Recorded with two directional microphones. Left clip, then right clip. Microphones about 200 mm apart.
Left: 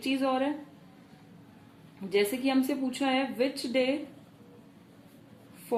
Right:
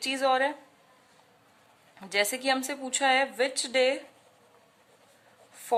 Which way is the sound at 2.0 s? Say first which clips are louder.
Right 1 dB; 45° right (ahead or behind).